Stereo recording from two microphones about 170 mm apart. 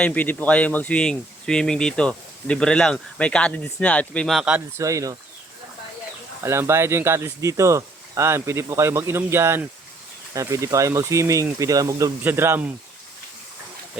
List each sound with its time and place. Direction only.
0.0 s speech: 10° left (ahead or behind)
4.8 s speech: 20° right (ahead or behind)
6.4 s speech: 15° right (ahead or behind)